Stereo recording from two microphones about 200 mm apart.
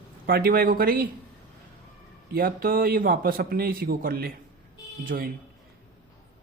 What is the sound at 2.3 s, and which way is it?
A man's voice, 45° right (ahead or behind).